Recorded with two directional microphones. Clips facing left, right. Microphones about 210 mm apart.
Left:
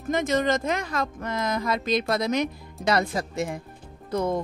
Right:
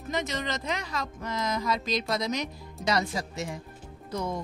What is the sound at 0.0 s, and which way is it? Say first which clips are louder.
Speech: left 8 dB; 50° left (ahead or behind).